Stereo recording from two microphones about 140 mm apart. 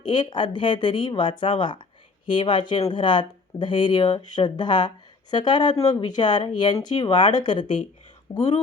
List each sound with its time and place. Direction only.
0.0 s speech: 35° left (ahead or behind)
8.3 s speech: 25° left (ahead or behind)